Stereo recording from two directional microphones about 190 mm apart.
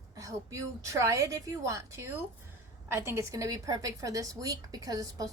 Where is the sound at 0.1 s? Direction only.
15° right (ahead or behind).